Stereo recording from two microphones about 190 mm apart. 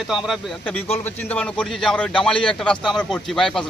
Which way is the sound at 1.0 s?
10° left (ahead or behind).